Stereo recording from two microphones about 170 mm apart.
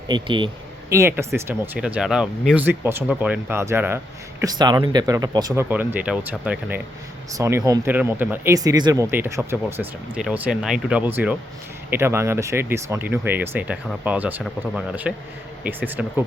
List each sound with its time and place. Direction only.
0.1 s speech: 30° right (ahead or behind)
0.9 s speech: 15° right (ahead or behind)
5.6 s speech: 10° right (ahead or behind)